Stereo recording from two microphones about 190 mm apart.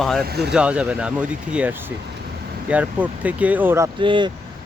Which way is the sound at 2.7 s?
5° right (ahead or behind).